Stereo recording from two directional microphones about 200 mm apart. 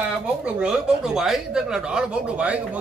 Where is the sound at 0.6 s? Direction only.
5° right (ahead or behind).